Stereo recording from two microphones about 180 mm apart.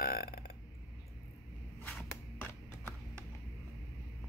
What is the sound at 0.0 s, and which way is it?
Burping, 60° left (ahead or behind).